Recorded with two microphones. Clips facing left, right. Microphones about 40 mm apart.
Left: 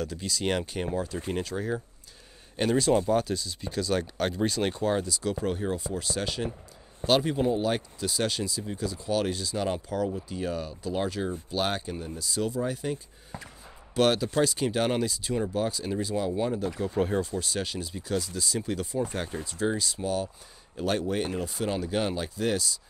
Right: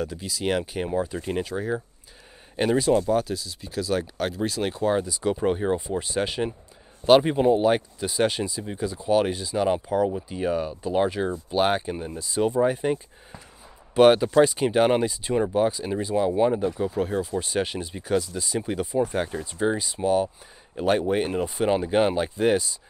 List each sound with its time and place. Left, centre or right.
0.0 s speech: centre
2.9 s speech: centre
5.0 s speech: centre
16.9 s speech: centre
17.4 s speech: right